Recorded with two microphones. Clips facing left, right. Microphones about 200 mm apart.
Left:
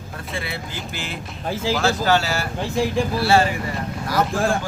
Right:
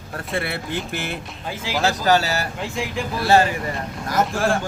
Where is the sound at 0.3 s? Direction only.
60° right (ahead or behind).